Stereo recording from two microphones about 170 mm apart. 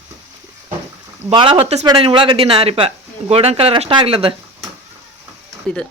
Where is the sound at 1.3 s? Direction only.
30° right (ahead or behind).